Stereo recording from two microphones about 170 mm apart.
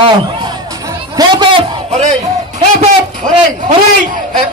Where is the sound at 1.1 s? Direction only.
25° right (ahead or behind).